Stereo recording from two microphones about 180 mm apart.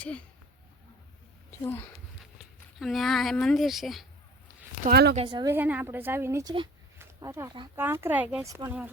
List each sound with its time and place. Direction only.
1.5 s a child's voice: 10° left (ahead or behind)
2.7 s speech: centre (ahead or behind)
4.8 s speech: 60° right (ahead or behind)
5.1 s speech: 30° right (ahead or behind)
5.5 s speech: 10° right (ahead or behind)
7.0 s a sound: 15° right (ahead or behind)
7.8 s speech: 10° right (ahead or behind)